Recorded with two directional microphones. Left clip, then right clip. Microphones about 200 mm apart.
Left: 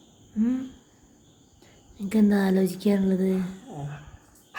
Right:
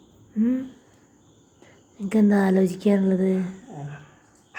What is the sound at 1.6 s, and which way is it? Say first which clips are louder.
Speech: right 2 dB; 10° left (ahead or behind).